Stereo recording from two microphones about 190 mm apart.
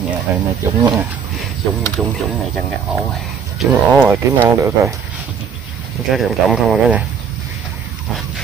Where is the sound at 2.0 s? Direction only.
5° right (ahead or behind).